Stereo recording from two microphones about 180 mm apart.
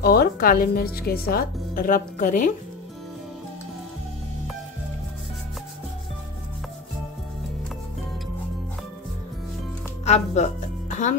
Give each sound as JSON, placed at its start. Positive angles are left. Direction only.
{"t": 0.0, "sound": "speech", "side_deg": 60}
{"t": 10.0, "sound": "speech", "side_deg": 40}